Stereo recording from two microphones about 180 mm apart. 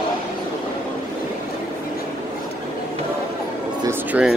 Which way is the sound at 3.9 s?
5° right (ahead or behind).